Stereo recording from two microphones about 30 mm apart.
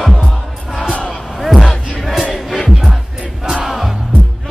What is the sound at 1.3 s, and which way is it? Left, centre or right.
Music, centre.